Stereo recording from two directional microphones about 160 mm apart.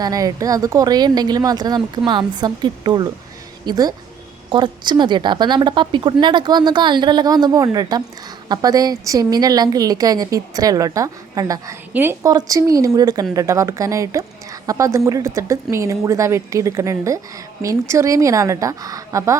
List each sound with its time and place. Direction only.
0.0 s a woman's voice: 25° right (ahead or behind)